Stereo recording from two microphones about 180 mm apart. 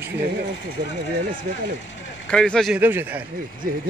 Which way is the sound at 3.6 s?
50° right (ahead or behind).